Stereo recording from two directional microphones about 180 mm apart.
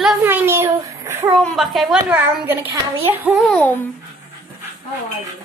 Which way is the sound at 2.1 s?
10° right (ahead or behind).